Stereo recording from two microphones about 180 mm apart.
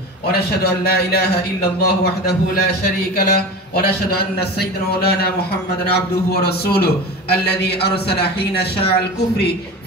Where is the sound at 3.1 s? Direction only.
55° left (ahead or behind).